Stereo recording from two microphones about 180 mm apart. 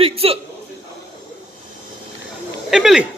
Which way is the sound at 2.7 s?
5° right (ahead or behind).